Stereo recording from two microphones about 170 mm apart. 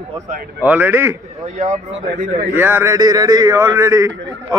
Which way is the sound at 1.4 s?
40° right (ahead or behind).